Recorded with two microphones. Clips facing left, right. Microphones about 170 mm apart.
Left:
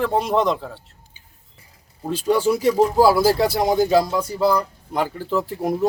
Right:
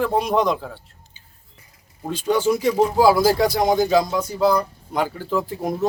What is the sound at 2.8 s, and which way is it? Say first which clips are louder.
Speech: even; 5° left (ahead or behind).